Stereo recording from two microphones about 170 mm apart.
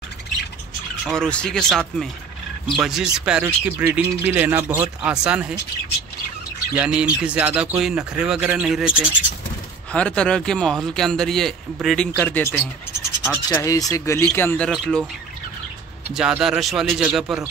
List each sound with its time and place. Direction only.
1.0 s speech: 5° left (ahead or behind)
6.8 s speech: 5° right (ahead or behind)
9.9 s speech: 5° left (ahead or behind)
16.1 s speech: 5° right (ahead or behind)